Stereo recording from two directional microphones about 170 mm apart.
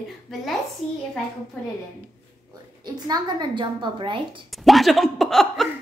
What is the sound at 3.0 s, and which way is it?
A woman's voice, 25° right (ahead or behind).